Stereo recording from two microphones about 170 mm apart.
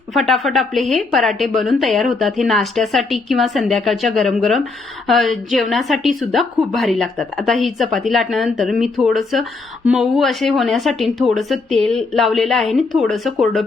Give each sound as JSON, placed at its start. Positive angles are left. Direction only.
{"t": 0.1, "sound": "speech", "side_deg": 0}